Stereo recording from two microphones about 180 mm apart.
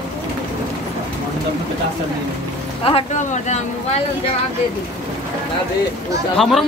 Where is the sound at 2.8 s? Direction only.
35° left (ahead or behind).